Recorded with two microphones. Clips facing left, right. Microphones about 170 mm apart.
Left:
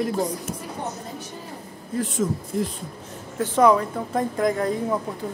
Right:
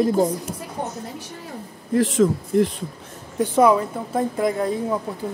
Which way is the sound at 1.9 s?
90° right.